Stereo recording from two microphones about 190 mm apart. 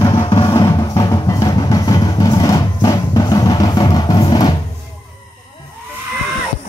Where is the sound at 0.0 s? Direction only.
25° left (ahead or behind).